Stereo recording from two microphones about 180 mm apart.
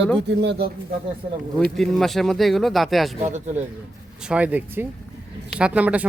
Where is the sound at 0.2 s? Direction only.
75° right (ahead or behind).